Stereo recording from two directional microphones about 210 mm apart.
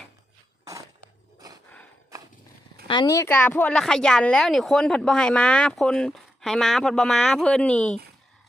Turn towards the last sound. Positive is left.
turn(degrees=5)  # may be behind; listen again after turning